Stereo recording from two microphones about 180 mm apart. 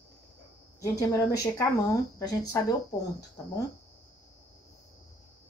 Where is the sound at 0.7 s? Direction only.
15° left (ahead or behind).